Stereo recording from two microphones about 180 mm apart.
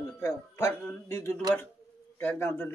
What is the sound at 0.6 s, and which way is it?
A man's voice, 15° left (ahead or behind).